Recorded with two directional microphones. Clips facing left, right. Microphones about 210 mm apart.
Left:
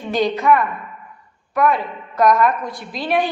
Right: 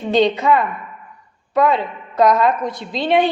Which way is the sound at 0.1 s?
25° right (ahead or behind).